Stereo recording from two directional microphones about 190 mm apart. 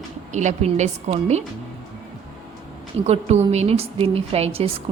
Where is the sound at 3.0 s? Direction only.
35° right (ahead or behind).